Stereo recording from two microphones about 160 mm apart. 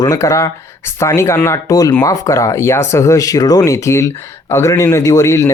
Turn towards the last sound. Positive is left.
turn(degrees=20)  # may be behind; listen again after turning